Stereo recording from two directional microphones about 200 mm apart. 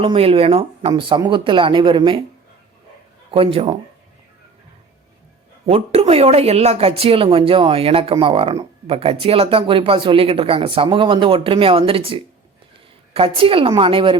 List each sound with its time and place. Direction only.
0.0 s speech: 30° right (ahead or behind)
3.3 s speech: 30° right (ahead or behind)
5.6 s speech: 30° right (ahead or behind)